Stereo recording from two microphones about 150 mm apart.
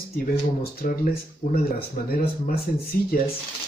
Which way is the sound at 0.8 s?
80° left.